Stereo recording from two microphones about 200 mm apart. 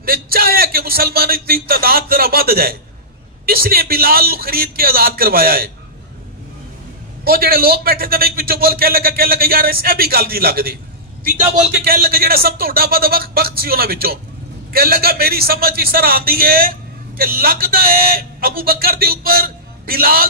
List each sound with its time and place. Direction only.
0.0 s a sound: 50° right (ahead or behind)
3.4 s a man's voice: 50° right (ahead or behind)
7.2 s a man's voice: 50° right (ahead or behind)